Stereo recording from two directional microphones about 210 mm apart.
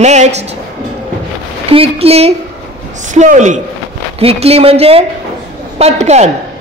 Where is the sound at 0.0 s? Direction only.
35° right (ahead or behind).